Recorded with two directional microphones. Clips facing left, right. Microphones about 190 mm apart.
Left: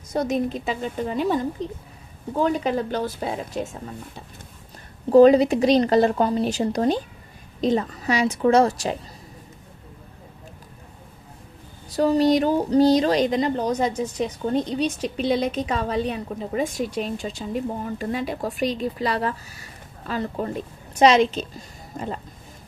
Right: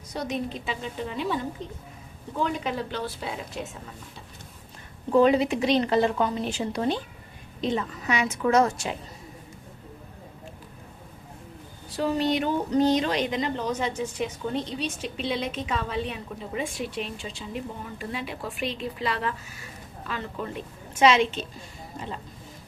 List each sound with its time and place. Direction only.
0.1 s a woman's voice: 45° left (ahead or behind)
5.0 s a woman's voice: 35° left (ahead or behind)
11.9 s a woman's voice: 40° left (ahead or behind)